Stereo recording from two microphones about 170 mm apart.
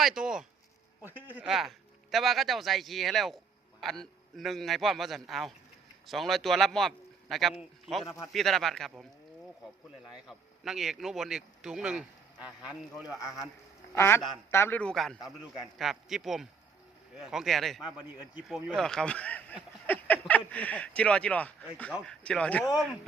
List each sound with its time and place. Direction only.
0.0 s a man's voice: 5° right (ahead or behind)
10.1 s speech: centre (ahead or behind)
13.1 s a man's voice: 20° left (ahead or behind)